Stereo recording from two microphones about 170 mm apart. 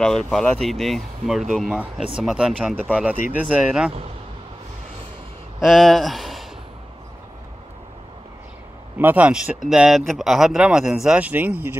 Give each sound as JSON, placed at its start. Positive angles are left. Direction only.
{"t": 0.0, "sound": "speech", "side_deg": 5}
{"t": 5.6, "sound": "speech", "side_deg": 0}
{"t": 8.9, "sound": "speech", "side_deg": -10}